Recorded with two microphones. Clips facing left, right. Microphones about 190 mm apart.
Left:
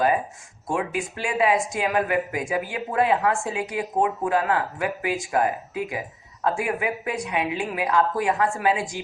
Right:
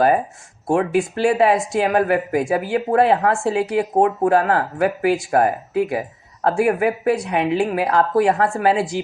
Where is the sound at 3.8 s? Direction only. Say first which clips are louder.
Right 5 dB; 40° right (ahead or behind).